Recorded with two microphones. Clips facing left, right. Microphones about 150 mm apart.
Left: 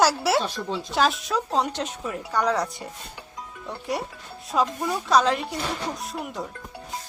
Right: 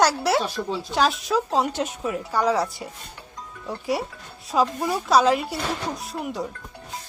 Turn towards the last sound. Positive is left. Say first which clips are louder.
# right 3 dB
turn(degrees=0)  # may be behind; listen again after turning